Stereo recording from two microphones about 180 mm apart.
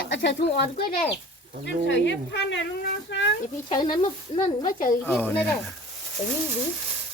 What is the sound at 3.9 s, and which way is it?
Speech, 35° left (ahead or behind).